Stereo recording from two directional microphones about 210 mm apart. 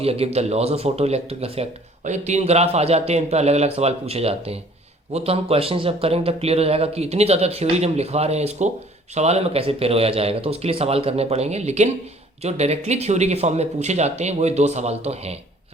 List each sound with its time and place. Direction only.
0.0 s a man's voice: 30° right (ahead or behind)